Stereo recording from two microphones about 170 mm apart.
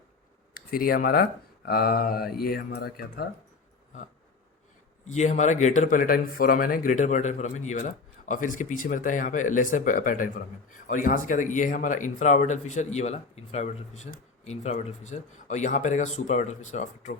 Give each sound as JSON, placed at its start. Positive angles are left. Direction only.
{"t": 0.5, "sound": "speech", "side_deg": 60}
{"t": 5.0, "sound": "a man's voice", "side_deg": 45}